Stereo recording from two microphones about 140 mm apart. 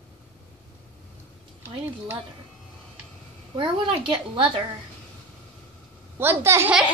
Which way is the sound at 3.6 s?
35° right (ahead or behind).